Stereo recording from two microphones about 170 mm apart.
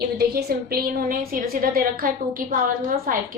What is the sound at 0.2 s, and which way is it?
A woman's voice, 65° right (ahead or behind).